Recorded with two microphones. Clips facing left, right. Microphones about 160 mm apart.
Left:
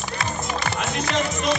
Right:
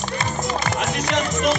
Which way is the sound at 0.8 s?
45° right (ahead or behind).